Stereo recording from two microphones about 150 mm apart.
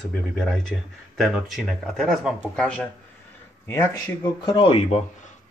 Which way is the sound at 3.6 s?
20° left (ahead or behind).